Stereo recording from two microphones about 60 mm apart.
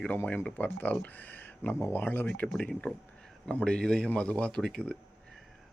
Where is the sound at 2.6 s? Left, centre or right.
Left.